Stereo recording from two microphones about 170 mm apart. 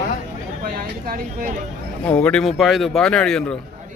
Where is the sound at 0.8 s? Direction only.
60° right (ahead or behind).